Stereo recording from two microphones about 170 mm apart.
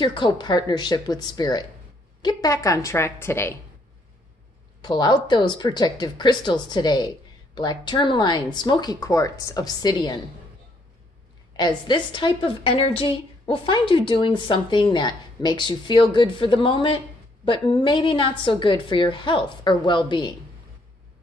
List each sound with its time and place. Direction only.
0.0 s a woman's voice: 25° left (ahead or behind)
4.8 s a woman's voice: 25° left (ahead or behind)
11.5 s a woman's voice: 25° left (ahead or behind)